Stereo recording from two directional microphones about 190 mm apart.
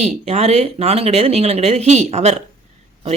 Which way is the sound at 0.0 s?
35° right (ahead or behind).